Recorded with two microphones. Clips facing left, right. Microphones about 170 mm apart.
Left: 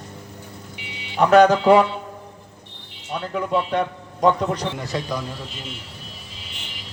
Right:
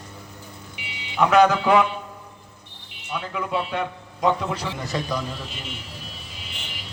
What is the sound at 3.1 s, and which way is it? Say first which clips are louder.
A man's voice: left 4 dB; 40° left (ahead or behind).